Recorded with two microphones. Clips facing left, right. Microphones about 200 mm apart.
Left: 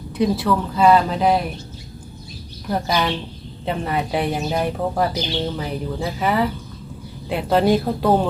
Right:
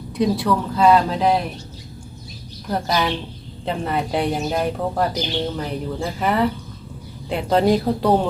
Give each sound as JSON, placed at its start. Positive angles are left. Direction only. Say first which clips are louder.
{"t": 0.2, "sound": "speech", "louder": "even", "side_deg": 0}
{"t": 2.6, "sound": "speech", "louder": "even", "side_deg": 0}